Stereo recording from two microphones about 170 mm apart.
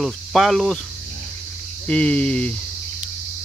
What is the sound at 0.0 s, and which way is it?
Speech, centre (ahead or behind).